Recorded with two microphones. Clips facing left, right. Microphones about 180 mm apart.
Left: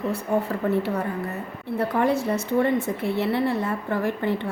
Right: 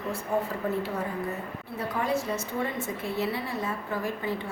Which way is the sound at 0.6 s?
65° left (ahead or behind).